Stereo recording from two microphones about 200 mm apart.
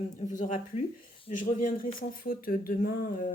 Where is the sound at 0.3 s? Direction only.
40° left (ahead or behind).